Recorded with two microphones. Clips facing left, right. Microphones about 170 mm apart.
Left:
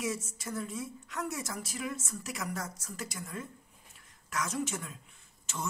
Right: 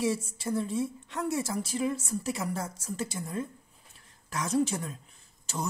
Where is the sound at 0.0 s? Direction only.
30° right (ahead or behind).